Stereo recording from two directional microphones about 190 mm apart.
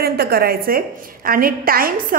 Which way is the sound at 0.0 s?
55° right (ahead or behind).